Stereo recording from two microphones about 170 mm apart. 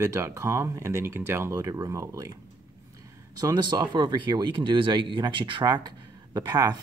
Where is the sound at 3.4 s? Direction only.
25° right (ahead or behind).